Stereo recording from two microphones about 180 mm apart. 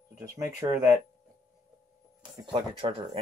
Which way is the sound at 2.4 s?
30° right (ahead or behind).